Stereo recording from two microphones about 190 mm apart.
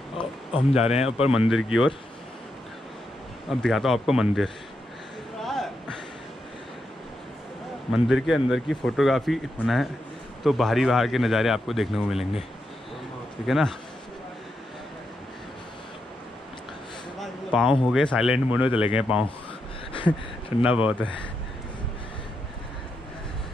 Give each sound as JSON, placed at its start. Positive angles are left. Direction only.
{"t": 0.9, "sound": "speech", "side_deg": 35}
{"t": 1.5, "sound": "speech", "side_deg": 0}
{"t": 3.4, "sound": "speech", "side_deg": 0}
{"t": 5.4, "sound": "a sound", "side_deg": 0}
{"t": 7.9, "sound": "speech", "side_deg": 0}
{"t": 13.5, "sound": "speech", "side_deg": 0}
{"t": 17.2, "sound": "a sound", "side_deg": 0}
{"t": 17.9, "sound": "speech", "side_deg": 0}
{"t": 18.7, "sound": "speech", "side_deg": 30}
{"t": 18.9, "sound": "speech", "side_deg": -5}
{"t": 19.9, "sound": "a sound", "side_deg": 25}
{"t": 20.6, "sound": "speech", "side_deg": -5}